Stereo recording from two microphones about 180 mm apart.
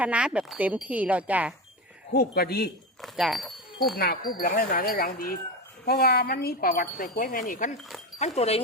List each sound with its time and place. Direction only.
0.0 s speech: 5° right (ahead or behind)
2.1 s speech: 60° left (ahead or behind)
3.0 s speech: centre (ahead or behind)
3.9 s speech: 55° left (ahead or behind)
7.8 s speech: centre (ahead or behind)
8.4 s speech: 35° left (ahead or behind)